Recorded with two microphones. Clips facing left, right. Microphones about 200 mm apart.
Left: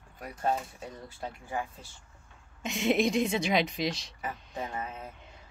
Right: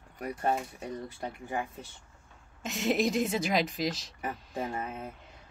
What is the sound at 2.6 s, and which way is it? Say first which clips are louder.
A woman's voice: left 2 dB; centre (ahead or behind).